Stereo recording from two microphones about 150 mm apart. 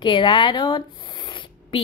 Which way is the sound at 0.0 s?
30° left (ahead or behind).